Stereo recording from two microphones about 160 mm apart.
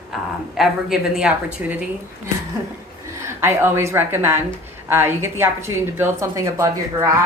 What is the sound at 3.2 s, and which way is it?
A woman's voice, 15° right (ahead or behind).